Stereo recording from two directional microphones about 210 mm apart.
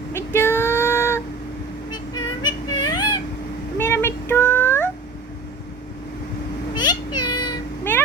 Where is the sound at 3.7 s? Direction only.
10° left (ahead or behind).